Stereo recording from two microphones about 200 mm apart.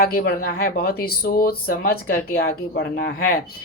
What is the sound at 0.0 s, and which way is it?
Speech, 50° left (ahead or behind).